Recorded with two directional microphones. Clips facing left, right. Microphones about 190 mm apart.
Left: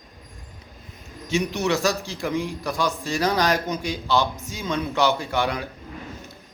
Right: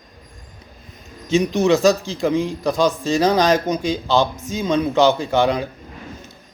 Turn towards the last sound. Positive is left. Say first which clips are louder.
# right 7 dB
turn(degrees=-20)  # may be behind; listen again after turning